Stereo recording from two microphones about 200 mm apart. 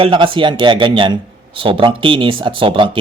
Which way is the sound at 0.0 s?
25° right (ahead or behind).